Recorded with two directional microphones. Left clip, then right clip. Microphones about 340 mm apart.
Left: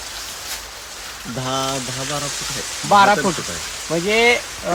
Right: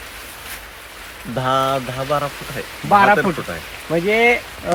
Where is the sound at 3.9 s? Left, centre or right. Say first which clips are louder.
Right 1 dB; centre.